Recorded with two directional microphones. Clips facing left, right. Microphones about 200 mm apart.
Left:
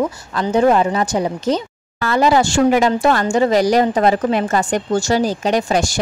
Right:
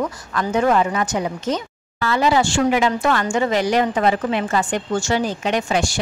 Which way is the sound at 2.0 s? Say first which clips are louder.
Left 3 dB; 45° left (ahead or behind).